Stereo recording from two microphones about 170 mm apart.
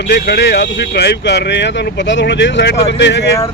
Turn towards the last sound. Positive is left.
turn(degrees=90)